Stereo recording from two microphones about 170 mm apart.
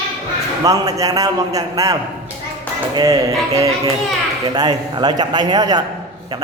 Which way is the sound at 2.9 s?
20° right (ahead or behind).